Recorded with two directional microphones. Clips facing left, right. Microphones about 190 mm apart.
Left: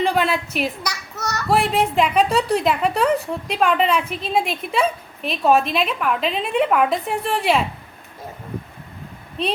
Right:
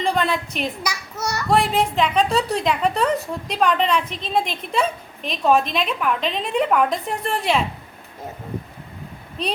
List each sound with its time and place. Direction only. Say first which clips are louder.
0.0 s a woman's voice: left 2 dB; 5° left (ahead or behind)
0.8 s children playing: right 1 dB; 10° right (ahead or behind)
1.5 s a woman's voice: left 1 dB; centre (ahead or behind)